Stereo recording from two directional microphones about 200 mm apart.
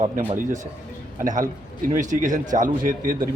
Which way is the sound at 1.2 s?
40° right (ahead or behind).